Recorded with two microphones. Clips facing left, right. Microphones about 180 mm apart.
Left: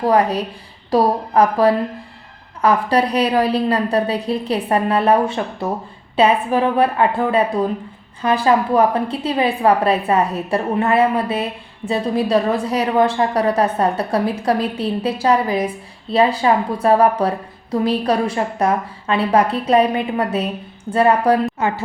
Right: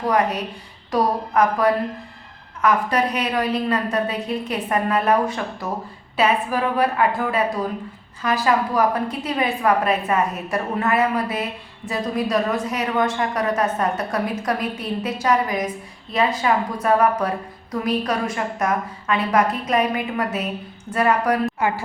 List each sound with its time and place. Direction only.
0.0 s a woman's voice: 30° left (ahead or behind)